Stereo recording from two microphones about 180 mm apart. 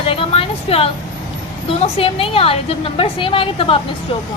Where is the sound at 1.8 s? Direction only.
30° left (ahead or behind).